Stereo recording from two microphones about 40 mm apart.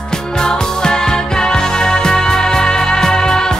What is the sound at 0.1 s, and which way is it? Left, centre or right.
Music, centre.